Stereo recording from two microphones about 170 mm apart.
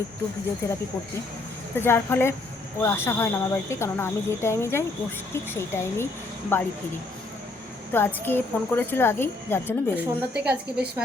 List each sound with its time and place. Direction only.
1.7 s speech: 15° left (ahead or behind)
7.9 s speech: 10° left (ahead or behind)
9.9 s a woman's voice: 10° right (ahead or behind)